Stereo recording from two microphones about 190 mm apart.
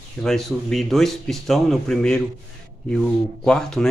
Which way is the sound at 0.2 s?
Centre (ahead or behind).